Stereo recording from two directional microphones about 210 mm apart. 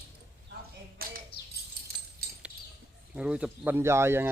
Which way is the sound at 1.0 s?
45° right (ahead or behind).